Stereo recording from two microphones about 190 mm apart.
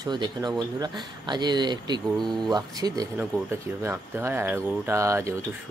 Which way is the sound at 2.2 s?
Centre (ahead or behind).